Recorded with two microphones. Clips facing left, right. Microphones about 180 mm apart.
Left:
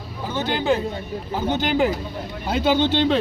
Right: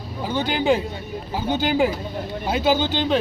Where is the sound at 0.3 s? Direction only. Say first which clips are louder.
Right 1 dB; 15° right (ahead or behind).